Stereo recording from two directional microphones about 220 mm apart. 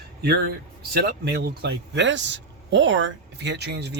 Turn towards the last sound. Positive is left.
turn(degrees=-50)  # may be behind; listen again after turning